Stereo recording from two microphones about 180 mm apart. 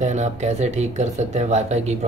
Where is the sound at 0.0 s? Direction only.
40° right (ahead or behind).